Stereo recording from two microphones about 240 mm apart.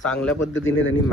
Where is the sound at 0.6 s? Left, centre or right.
Left.